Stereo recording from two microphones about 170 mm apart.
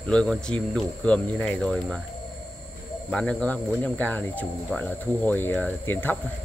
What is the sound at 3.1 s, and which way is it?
Speech, 5° left (ahead or behind).